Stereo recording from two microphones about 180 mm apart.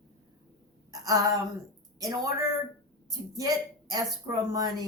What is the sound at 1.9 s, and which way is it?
Speech, 20° right (ahead or behind).